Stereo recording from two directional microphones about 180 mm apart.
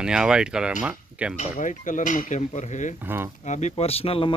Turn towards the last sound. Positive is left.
turn(degrees=30)  # may be behind; listen again after turning